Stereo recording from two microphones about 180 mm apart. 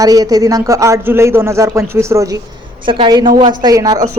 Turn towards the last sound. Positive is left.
turn(degrees=-20)  # may be behind; listen again after turning